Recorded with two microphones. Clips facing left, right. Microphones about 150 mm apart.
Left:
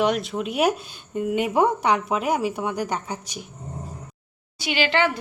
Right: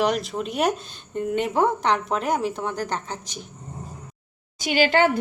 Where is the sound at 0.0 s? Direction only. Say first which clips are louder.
Left 1 dB; centre (ahead or behind).